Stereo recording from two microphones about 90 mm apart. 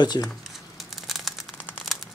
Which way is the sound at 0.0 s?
50° left (ahead or behind).